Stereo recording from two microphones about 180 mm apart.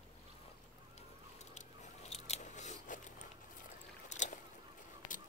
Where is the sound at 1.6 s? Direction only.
35° left (ahead or behind).